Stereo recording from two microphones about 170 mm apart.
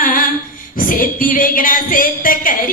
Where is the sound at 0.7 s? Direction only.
55° left (ahead or behind).